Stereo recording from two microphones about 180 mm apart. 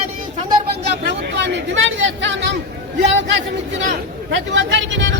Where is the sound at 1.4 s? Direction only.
85° right.